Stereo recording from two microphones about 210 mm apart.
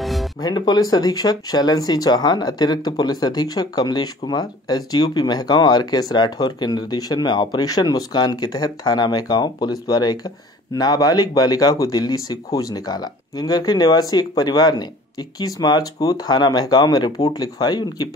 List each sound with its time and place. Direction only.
0.0 s music: centre (ahead or behind)
0.4 s speech: 20° left (ahead or behind)